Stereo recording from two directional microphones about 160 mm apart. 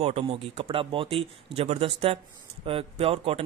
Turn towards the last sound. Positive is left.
turn(degrees=-40)  # may be behind; listen again after turning